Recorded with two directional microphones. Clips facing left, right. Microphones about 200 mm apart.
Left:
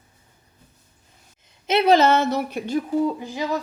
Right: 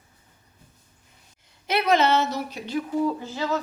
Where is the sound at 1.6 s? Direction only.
25° left (ahead or behind).